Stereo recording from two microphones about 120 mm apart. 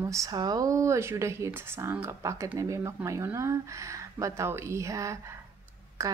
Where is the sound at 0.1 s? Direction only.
30° right (ahead or behind).